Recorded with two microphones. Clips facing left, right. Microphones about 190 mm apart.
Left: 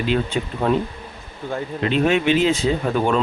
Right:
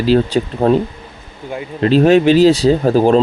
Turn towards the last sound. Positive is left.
turn(degrees=-35)  # may be behind; listen again after turning